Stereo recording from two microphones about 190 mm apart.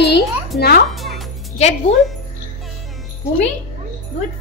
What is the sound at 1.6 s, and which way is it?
Speech, 35° left (ahead or behind).